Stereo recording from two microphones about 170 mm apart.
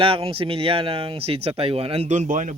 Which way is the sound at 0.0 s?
35° right (ahead or behind).